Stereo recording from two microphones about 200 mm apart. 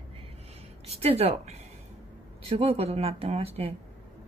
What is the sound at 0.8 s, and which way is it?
Speech, 30° right (ahead or behind).